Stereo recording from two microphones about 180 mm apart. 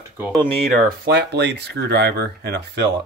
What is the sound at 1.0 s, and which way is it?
Speech, 65° right (ahead or behind).